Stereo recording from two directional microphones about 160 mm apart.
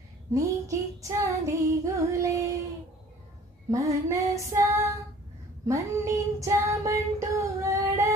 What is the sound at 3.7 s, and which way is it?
Female singing, 20° right (ahead or behind).